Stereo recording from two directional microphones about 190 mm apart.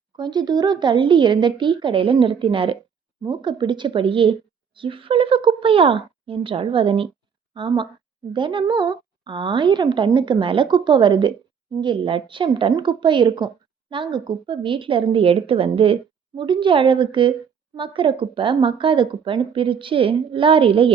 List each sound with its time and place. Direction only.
0.2 s a woman's voice: 20° right (ahead or behind)